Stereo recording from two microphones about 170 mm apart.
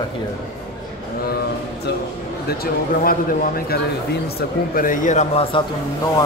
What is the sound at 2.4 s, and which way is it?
Speech, 60° left (ahead or behind).